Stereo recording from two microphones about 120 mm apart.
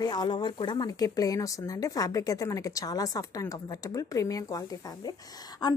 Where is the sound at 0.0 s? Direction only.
35° left (ahead or behind).